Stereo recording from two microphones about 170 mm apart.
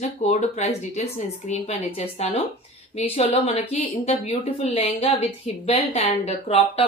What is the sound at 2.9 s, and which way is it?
Speech, 40° left (ahead or behind).